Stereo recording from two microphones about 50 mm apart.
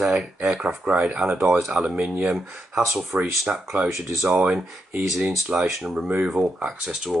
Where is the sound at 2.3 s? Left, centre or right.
Centre.